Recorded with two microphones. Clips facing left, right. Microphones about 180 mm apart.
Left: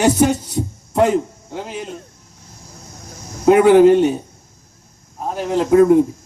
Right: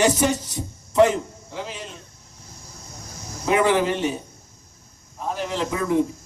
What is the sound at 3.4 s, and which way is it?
Speech, 60° left (ahead or behind).